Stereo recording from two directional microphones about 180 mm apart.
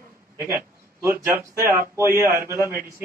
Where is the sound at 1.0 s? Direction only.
15° right (ahead or behind).